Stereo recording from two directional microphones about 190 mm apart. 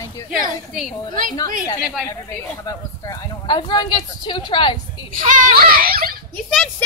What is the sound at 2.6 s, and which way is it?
Speech, 20° left (ahead or behind).